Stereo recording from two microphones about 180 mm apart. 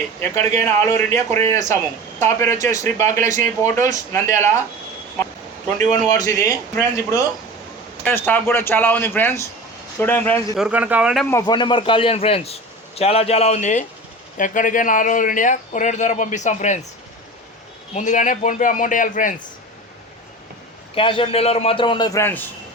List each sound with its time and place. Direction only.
0.2 s speech: 15° left (ahead or behind)
5.9 s speech: 20° left (ahead or behind)
10.6 s speech: 10° right (ahead or behind)
11.3 s a man's voice: 20° left (ahead or behind); by 16.8 s 40° left (ahead or behind)
17.9 s speech: 45° left (ahead or behind)
20.9 s a man's voice: 30° left (ahead or behind); by 22.4 s 10° left (ahead or behind)